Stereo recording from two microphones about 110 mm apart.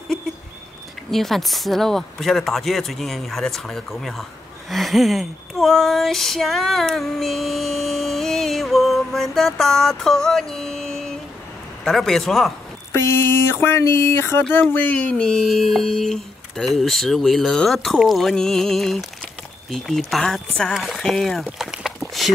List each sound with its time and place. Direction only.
1.1 s speech: centre (ahead or behind)
12.9 s speech: 20° left (ahead or behind); by 21.9 s centre (ahead or behind)